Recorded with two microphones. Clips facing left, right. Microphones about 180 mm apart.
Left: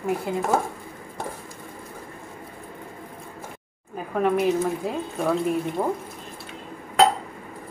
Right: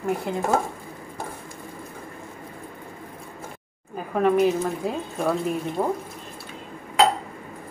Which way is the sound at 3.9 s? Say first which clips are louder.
Right 2 dB; centre (ahead or behind).